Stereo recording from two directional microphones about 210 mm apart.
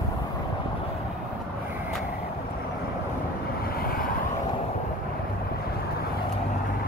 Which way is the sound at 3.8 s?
45° left (ahead or behind).